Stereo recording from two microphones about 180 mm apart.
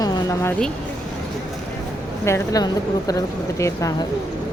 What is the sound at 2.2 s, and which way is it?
Speech, 15° left (ahead or behind).